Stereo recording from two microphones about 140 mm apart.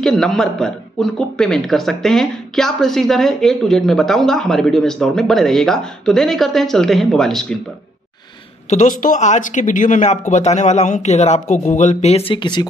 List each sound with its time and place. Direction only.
0.0 s speech: 5° left (ahead or behind)
8.6 s speech: 65° left (ahead or behind)
12.3 s speech: 35° left (ahead or behind)